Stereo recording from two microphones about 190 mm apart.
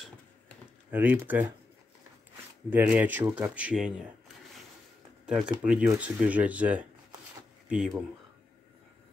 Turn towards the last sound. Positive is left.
turn(degrees=-5)  # may be behind; listen again after turning